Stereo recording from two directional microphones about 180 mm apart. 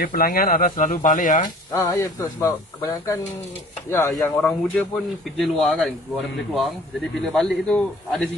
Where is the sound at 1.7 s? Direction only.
20° left (ahead or behind).